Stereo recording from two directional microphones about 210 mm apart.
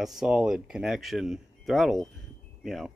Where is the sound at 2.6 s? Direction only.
Centre (ahead or behind).